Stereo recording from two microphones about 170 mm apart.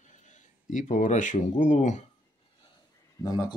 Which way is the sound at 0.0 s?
45° left (ahead or behind).